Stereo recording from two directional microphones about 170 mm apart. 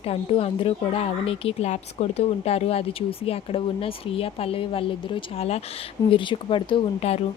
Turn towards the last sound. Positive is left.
turn(degrees=35)  # may be behind; listen again after turning